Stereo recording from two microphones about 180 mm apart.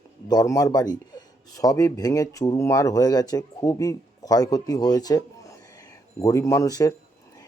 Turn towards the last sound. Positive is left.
turn(degrees=20)  # may be behind; listen again after turning